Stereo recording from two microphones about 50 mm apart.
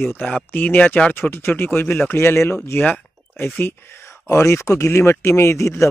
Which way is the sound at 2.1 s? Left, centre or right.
Left.